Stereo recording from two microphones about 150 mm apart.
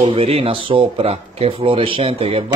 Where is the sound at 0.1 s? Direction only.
40° right (ahead or behind).